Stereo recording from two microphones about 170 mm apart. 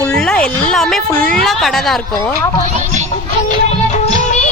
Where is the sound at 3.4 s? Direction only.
45° left (ahead or behind).